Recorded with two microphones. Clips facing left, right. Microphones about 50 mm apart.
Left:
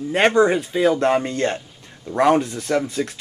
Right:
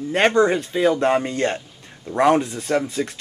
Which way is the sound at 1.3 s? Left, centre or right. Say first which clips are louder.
Even; centre.